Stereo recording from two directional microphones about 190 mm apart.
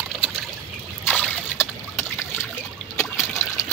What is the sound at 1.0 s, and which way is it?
Trickle, 5° left (ahead or behind).